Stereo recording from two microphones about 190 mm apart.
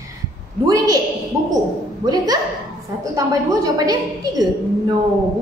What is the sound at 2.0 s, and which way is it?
A woman's voice, 20° right (ahead or behind).